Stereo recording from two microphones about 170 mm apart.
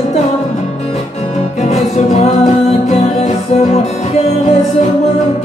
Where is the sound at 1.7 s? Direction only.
40° left (ahead or behind).